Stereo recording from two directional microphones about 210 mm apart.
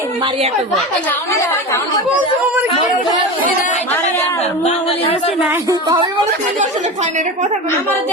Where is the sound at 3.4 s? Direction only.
35° left (ahead or behind).